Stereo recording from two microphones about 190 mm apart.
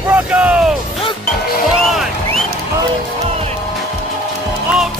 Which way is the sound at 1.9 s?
Centre (ahead or behind).